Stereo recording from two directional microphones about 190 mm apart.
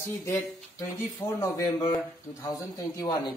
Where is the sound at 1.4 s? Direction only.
20° left (ahead or behind).